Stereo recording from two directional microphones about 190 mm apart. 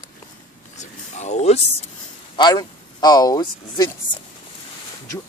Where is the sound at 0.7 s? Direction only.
35° left (ahead or behind).